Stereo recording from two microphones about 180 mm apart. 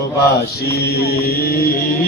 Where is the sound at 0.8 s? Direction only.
60° left (ahead or behind).